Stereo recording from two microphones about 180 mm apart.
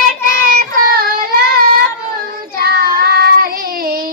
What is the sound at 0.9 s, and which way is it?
Child singing, 55° right (ahead or behind).